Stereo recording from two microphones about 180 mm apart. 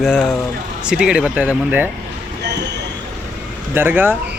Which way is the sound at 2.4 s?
70° right (ahead or behind).